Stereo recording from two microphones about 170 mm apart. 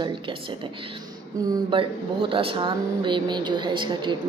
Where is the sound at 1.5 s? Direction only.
30° right (ahead or behind).